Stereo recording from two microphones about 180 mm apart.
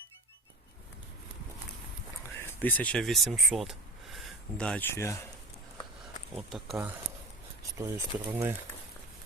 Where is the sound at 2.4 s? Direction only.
10° left (ahead or behind).